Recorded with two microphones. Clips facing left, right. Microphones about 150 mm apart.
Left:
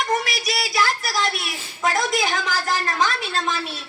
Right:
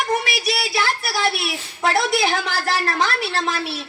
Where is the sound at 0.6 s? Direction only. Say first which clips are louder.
Even; 60° right (ahead or behind).